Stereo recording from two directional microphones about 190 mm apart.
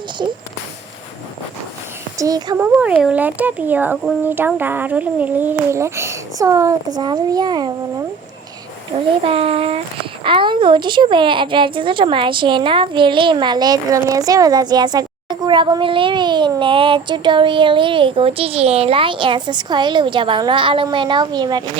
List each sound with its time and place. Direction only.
2.1 s a woman's voice: 20° right (ahead or behind)
2.6 s speech: 10° right (ahead or behind)
9.2 s a child's voice: 30° right (ahead or behind)